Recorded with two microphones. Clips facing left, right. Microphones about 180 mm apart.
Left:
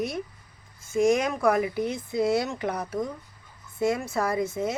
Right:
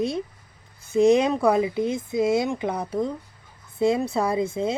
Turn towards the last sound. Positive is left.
turn(degrees=-30)  # may be behind; listen again after turning